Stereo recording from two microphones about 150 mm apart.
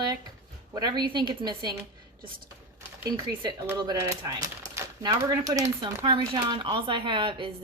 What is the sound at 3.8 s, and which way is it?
Speech, 25° right (ahead or behind).